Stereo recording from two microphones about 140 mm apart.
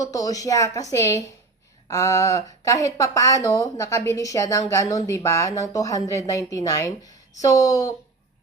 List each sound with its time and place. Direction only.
0.0 s speech: 25° left (ahead or behind)